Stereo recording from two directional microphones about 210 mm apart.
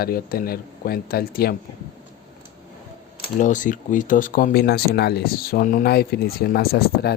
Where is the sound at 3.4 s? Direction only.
35° left (ahead or behind).